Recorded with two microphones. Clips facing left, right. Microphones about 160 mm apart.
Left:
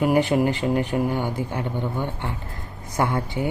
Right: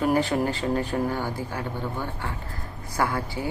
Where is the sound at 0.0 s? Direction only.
15° left (ahead or behind).